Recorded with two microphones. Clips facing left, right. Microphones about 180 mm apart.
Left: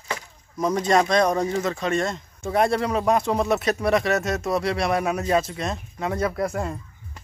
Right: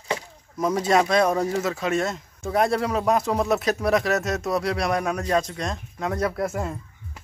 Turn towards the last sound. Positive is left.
turn(degrees=0)  # may be behind; listen again after turning